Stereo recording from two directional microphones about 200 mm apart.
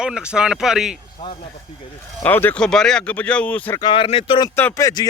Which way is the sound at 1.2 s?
30° left (ahead or behind).